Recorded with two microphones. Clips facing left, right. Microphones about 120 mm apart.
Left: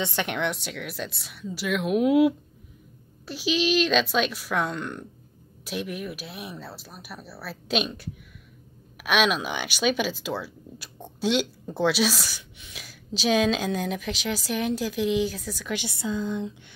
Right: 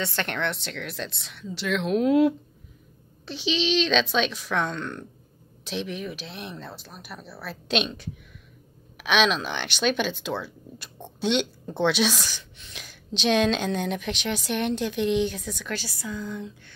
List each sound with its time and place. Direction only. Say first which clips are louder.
0.0 s a woman's voice: left 1 dB; 15° left (ahead or behind)
15.7 s speech: left 5 dB; 20° left (ahead or behind)